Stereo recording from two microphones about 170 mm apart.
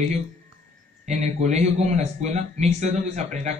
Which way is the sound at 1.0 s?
40° right (ahead or behind).